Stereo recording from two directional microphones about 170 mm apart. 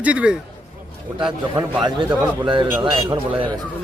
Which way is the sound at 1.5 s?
25° right (ahead or behind).